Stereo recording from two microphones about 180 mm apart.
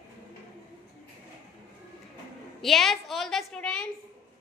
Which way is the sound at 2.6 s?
Centre (ahead or behind).